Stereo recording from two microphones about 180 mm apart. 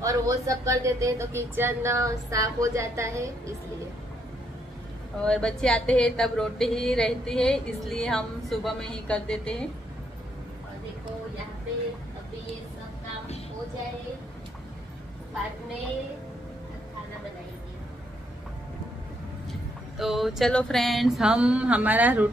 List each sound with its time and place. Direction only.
0.0 s speech: 20° right (ahead or behind)
5.2 s a woman's voice: 5° left (ahead or behind)
20.0 s a woman's voice: centre (ahead or behind)